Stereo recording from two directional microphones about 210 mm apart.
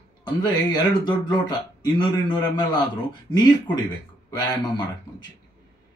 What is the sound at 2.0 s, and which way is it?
Speech, 20° left (ahead or behind).